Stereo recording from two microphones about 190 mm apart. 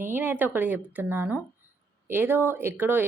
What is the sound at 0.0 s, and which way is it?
A woman's voice, 10° right (ahead or behind).